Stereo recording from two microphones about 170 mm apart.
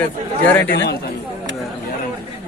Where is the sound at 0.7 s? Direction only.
85° left.